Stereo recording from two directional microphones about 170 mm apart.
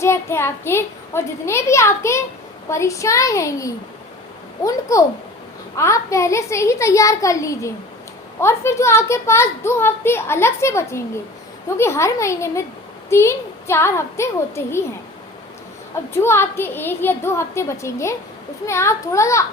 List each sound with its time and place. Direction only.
0.0 s a child's voice: 15° left (ahead or behind)
16.1 s a child's voice: 15° left (ahead or behind)